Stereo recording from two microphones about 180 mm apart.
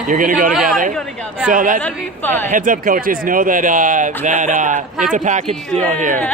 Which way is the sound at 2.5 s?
50° right (ahead or behind).